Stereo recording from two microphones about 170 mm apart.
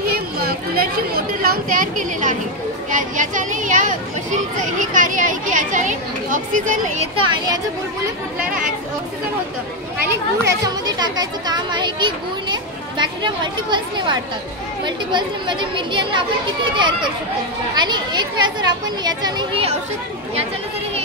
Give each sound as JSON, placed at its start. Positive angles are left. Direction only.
{"t": 0.1, "sound": "chatter", "side_deg": -65}
{"t": 2.9, "sound": "speech", "side_deg": -50}
{"t": 7.2, "sound": "speech", "side_deg": -20}
{"t": 10.4, "sound": "speech", "side_deg": -25}